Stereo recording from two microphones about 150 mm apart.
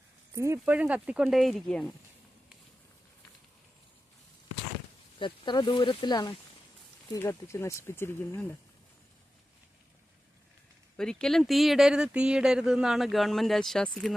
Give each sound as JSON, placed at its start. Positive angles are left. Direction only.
{"t": 0.3, "sound": "speech", "side_deg": -20}
{"t": 5.2, "sound": "speech", "side_deg": 30}
{"t": 10.9, "sound": "speech", "side_deg": 5}